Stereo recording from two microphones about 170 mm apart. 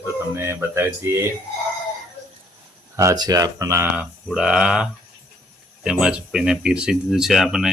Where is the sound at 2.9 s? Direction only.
20° right (ahead or behind).